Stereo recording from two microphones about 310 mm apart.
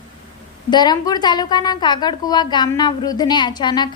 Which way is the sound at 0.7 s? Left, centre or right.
Centre.